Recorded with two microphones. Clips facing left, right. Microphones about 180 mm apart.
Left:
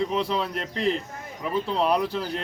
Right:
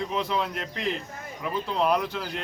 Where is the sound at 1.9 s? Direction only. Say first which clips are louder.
Left 2 dB; 30° left (ahead or behind).